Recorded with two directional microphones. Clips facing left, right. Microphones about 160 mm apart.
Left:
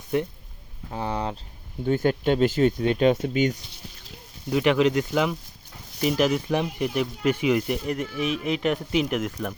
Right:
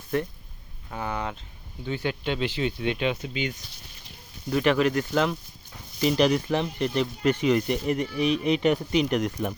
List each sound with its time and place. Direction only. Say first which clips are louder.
0.1 s speech: left 2 dB; 15° left (ahead or behind)
0.9 s speech: left 3 dB; 30° left (ahead or behind)
1.8 s speech: left 7 dB; 45° left (ahead or behind)
4.4 s speech: left 2 dB; 15° left (ahead or behind)